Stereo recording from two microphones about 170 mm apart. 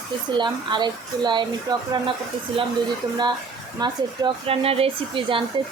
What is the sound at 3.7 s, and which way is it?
Speech, 25° right (ahead or behind).